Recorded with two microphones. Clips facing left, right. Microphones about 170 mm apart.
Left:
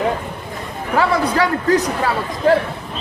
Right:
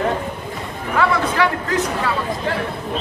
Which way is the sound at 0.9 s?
35° left (ahead or behind).